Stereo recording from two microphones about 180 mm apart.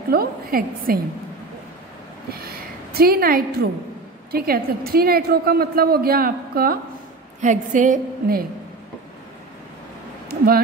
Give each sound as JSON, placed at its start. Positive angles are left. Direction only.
{"t": 0.1, "sound": "a woman's voice", "side_deg": -55}
{"t": 2.4, "sound": "a woman's voice", "side_deg": -60}
{"t": 7.4, "sound": "a woman's voice", "side_deg": -45}
{"t": 10.2, "sound": "a sound", "side_deg": -55}